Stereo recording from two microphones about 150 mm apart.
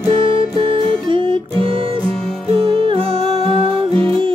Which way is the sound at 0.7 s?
35° right (ahead or behind).